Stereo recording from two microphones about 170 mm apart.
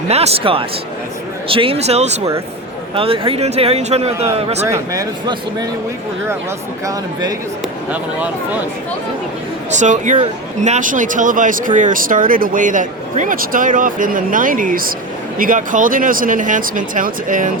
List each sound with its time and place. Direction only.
0.1 s speech: 35° right (ahead or behind)
4.6 s speech: 20° right (ahead or behind)
6.8 s speech: 20° right (ahead or behind)
9.7 s speech: 45° right (ahead or behind)